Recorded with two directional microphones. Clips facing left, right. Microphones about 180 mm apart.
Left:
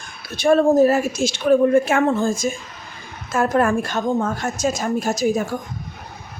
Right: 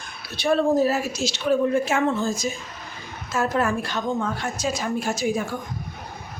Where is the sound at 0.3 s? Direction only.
50° left (ahead or behind).